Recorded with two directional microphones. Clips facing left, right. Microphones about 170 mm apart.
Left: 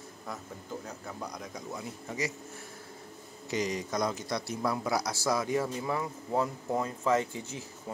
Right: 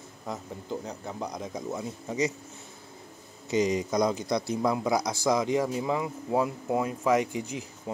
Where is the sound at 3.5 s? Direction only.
20° right (ahead or behind).